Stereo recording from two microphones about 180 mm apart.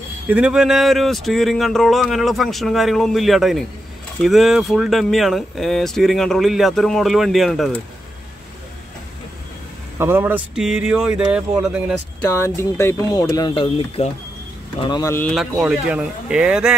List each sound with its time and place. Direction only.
0.3 s speech: 5° right (ahead or behind)
9.9 s speech: 10° right (ahead or behind)
12.3 s speech: 15° left (ahead or behind)
15.3 s speech: 5° right (ahead or behind)